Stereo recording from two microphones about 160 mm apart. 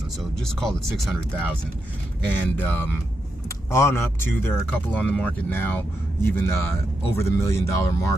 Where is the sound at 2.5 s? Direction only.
10° left (ahead or behind).